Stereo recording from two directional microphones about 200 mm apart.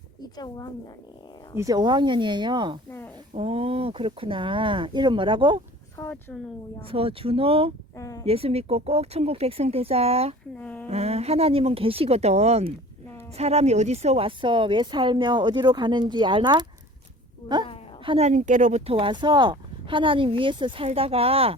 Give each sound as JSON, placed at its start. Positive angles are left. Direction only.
{"t": 0.3, "sound": "speech", "side_deg": 20}
{"t": 1.5, "sound": "speech", "side_deg": -20}
{"t": 6.0, "sound": "speech", "side_deg": 10}
{"t": 6.8, "sound": "speech", "side_deg": -30}
{"t": 7.9, "sound": "speech", "side_deg": 15}
{"t": 8.2, "sound": "speech", "side_deg": -30}
{"t": 10.6, "sound": "speech", "side_deg": 5}
{"t": 10.8, "sound": "speech", "side_deg": -30}
{"t": 18.0, "sound": "speech", "side_deg": -30}